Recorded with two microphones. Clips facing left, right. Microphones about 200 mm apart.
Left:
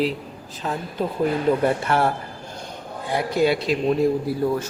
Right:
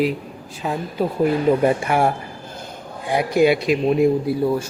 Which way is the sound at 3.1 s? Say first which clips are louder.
Right 4 dB; 15° right (ahead or behind).